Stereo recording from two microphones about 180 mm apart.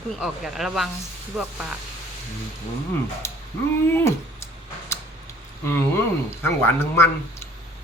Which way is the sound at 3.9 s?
15° left (ahead or behind).